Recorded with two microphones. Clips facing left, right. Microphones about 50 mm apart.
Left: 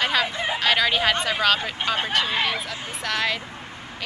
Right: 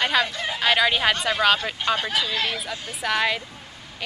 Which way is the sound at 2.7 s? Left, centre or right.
Centre.